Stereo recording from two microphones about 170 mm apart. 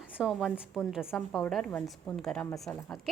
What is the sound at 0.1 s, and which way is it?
A woman's voice, 5° right (ahead or behind).